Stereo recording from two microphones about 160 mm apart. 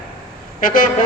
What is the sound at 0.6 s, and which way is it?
Speech, 60° left (ahead or behind).